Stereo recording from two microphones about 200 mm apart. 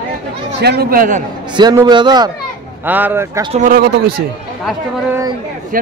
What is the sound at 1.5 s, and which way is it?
Speech, 20° right (ahead or behind).